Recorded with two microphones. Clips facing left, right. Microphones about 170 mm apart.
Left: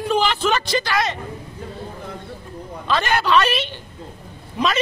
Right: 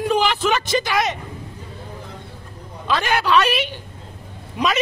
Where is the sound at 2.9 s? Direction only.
5° right (ahead or behind).